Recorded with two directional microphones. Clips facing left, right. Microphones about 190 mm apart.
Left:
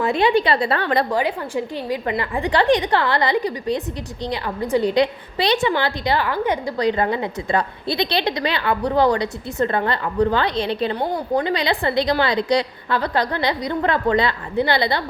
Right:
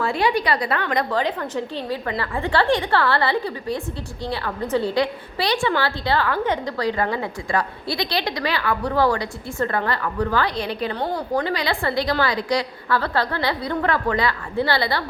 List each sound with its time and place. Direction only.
0.0 s a woman's voice: 20° left (ahead or behind)
1.1 s a woman's voice: 10° left (ahead or behind)